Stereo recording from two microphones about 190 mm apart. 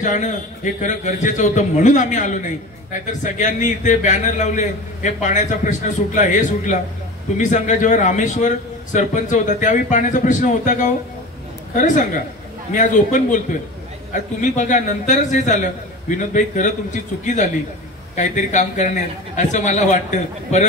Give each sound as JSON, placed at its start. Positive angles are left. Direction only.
{"t": 0.0, "sound": "a man's voice", "side_deg": 40}
{"t": 12.7, "sound": "a man's voice", "side_deg": 40}